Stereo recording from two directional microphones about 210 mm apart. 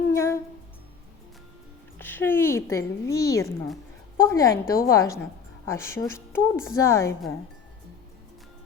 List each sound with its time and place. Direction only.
0.1 s humming: 10° left (ahead or behind)
2.0 s a woman's voice: 10° left (ahead or behind)